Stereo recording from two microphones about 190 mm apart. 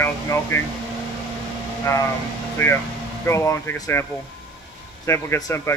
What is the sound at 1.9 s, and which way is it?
Speech, 15° left (ahead or behind).